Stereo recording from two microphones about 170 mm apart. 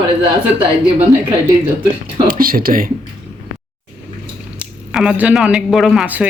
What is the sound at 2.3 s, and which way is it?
Speech, 55° right (ahead or behind).